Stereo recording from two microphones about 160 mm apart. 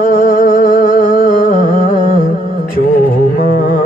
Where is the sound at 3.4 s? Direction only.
55° left (ahead or behind).